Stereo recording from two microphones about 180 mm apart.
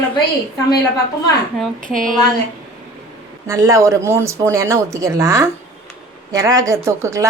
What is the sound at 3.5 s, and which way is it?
Speech, 20° right (ahead or behind).